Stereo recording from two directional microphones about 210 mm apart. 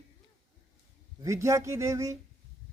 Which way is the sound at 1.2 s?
15° right (ahead or behind).